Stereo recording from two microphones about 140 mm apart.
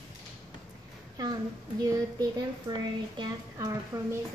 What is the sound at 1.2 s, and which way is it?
Speech, 25° right (ahead or behind).